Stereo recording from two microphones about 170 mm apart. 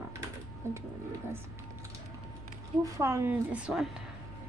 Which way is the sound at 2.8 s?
15° right (ahead or behind).